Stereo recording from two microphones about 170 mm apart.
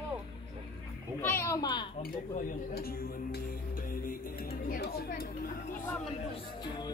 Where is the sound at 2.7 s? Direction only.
65° left (ahead or behind).